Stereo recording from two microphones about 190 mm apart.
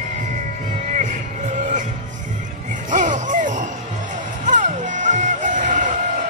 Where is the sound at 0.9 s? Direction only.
40° right (ahead or behind).